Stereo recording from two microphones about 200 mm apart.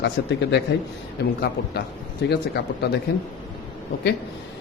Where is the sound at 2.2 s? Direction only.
60° left (ahead or behind).